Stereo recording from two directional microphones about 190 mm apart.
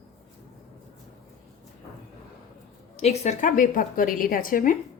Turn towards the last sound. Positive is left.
turn(degrees=45)  # may be behind; listen again after turning